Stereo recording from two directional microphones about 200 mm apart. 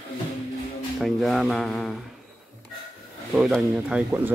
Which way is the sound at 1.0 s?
Centre (ahead or behind).